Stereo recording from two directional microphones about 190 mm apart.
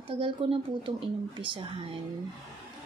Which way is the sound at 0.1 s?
30° right (ahead or behind).